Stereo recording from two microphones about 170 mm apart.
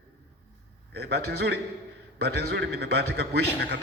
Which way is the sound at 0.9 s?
75° right (ahead or behind).